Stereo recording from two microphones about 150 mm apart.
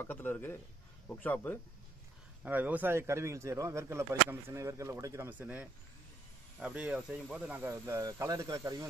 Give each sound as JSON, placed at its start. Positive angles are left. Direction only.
{"t": 0.0, "sound": "a man's voice", "side_deg": 15}
{"t": 2.4, "sound": "speech", "side_deg": -10}